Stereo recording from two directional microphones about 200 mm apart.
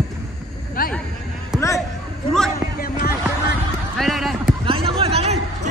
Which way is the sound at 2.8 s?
50° left (ahead or behind).